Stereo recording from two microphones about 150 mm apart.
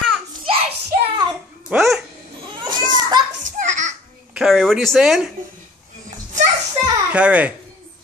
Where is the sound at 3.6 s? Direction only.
55° right (ahead or behind).